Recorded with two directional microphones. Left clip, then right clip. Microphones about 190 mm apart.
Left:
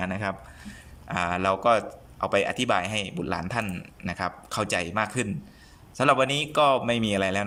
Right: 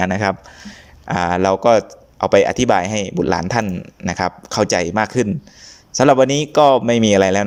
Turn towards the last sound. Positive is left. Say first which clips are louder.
# right 12 dB
turn(degrees=-35)  # may be behind; listen again after turning